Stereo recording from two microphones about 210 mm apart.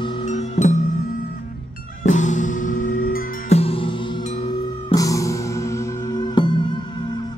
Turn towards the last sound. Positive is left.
turn(degrees=20)  # may be behind; listen again after turning